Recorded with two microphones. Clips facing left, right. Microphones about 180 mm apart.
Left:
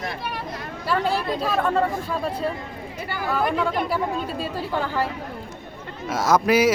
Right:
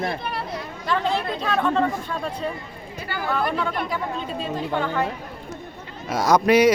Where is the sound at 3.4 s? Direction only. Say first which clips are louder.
Left 2 dB; 20° left (ahead or behind).